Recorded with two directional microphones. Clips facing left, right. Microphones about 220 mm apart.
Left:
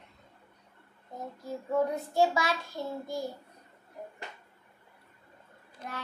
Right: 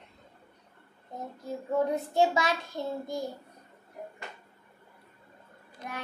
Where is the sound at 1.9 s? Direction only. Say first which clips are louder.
Right 1 dB; 20° right (ahead or behind).